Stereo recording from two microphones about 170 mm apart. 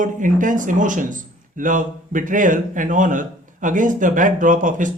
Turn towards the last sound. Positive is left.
turn(degrees=-50)  # may be behind; listen again after turning